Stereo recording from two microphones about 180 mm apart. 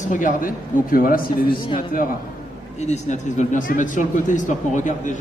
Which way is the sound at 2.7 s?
40° left (ahead or behind).